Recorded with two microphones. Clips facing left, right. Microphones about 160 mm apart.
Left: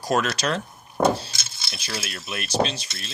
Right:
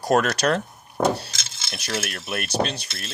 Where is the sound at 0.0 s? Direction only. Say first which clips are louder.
Right 4 dB; 55° right (ahead or behind).